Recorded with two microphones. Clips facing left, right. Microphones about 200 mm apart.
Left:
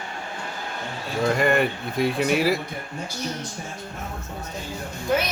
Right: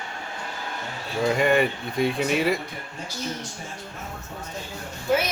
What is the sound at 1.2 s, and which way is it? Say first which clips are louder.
Speech: even; centre (ahead or behind).